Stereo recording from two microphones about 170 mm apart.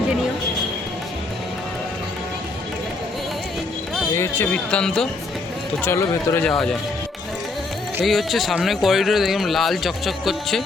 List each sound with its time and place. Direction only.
4.1 s speech: 15° left (ahead or behind)
8.0 s speech: centre (ahead or behind)